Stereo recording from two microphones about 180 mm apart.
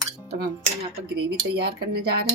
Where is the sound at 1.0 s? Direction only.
65° right (ahead or behind).